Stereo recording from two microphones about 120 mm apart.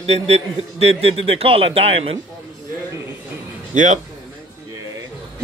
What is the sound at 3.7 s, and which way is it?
Speech, 90° right.